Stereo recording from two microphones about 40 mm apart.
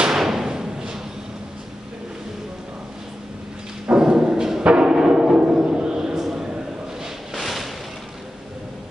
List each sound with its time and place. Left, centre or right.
0.1 s thump: centre
4.0 s thump: centre
4.6 s music: right
4.9 s timpani: centre
6.2 s a sound: centre
7.3 s a sound: centre